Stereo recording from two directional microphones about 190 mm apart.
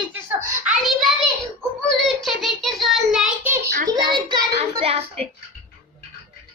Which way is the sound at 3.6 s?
50° right (ahead or behind).